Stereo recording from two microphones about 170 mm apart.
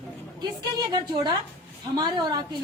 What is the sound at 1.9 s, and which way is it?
Speech, 20° right (ahead or behind).